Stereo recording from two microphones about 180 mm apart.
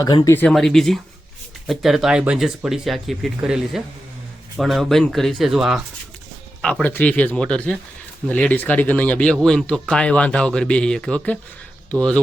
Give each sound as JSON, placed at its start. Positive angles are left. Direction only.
{"t": 0.0, "sound": "speech", "side_deg": 20}
{"t": 0.4, "sound": "speech", "side_deg": 0}